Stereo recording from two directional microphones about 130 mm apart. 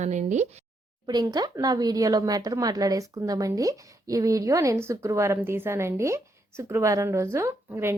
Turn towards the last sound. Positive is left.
turn(degrees=-20)  # may be behind; listen again after turning